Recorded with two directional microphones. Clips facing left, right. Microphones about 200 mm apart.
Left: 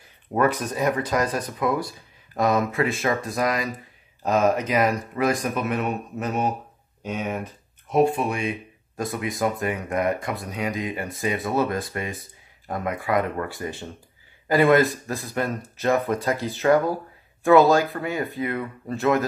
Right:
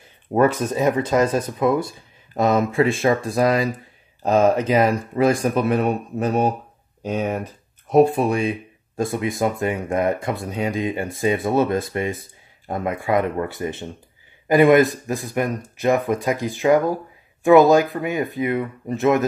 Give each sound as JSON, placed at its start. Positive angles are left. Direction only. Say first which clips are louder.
{"t": 0.3, "sound": "speech", "louder": "right 4 dB", "side_deg": -25}